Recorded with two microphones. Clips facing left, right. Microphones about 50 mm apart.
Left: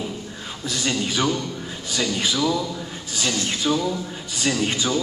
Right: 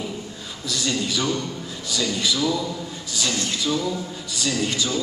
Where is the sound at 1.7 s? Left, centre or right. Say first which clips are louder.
Left 1 dB; left.